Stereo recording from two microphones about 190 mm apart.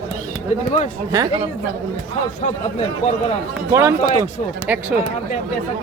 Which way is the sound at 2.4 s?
35° left (ahead or behind).